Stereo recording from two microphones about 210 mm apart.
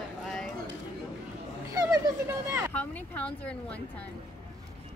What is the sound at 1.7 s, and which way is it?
Speech, 15° right (ahead or behind).